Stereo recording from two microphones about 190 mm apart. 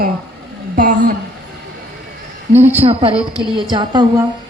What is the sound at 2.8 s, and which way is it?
A woman's voice, 30° right (ahead or behind).